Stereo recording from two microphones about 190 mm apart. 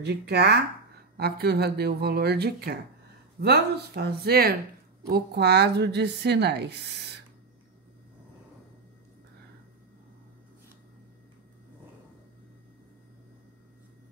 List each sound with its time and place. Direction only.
0.0 s a woman's voice: 60° right (ahead or behind)